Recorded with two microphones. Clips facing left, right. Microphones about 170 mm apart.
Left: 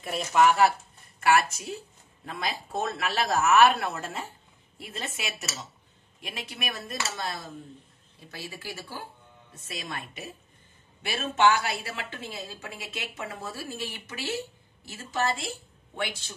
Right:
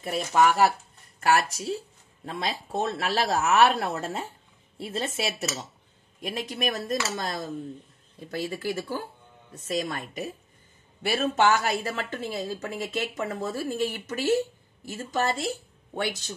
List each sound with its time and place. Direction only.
1.2 s a woman's voice: 35° right (ahead or behind)